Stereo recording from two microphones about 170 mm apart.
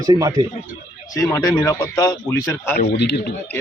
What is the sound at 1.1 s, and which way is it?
A man's voice, 20° left (ahead or behind).